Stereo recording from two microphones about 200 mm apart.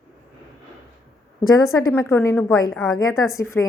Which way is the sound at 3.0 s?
15° left (ahead or behind).